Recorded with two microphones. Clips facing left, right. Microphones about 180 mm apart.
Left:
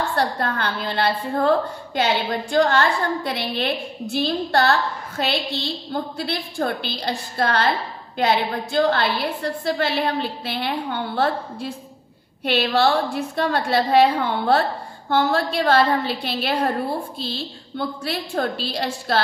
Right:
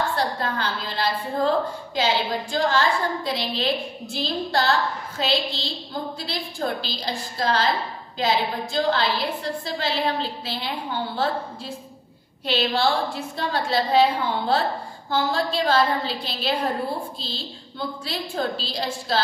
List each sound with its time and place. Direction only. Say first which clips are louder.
0.1 s a woman's voice: left 2 dB; 60° left (ahead or behind)
12.4 s a woman's voice: left 3 dB; 60° left (ahead or behind)